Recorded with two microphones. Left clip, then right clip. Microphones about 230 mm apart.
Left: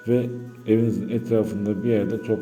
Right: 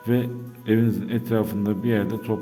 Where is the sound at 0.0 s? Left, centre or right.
Right.